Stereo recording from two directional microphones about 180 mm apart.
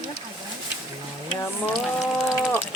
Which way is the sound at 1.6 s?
Centre (ahead or behind).